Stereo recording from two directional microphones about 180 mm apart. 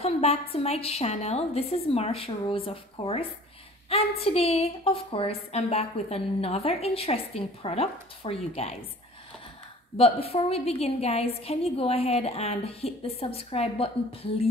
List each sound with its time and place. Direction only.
0.0 s a woman's voice: 35° left (ahead or behind)
9.9 s a woman's voice: 30° left (ahead or behind)